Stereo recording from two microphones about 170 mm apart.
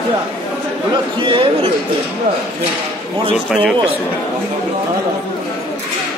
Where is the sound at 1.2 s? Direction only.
30° right (ahead or behind).